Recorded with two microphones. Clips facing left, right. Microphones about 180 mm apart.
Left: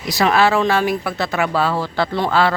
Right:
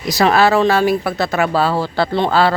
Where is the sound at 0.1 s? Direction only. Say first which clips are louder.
Right 3 dB; 40° right (ahead or behind).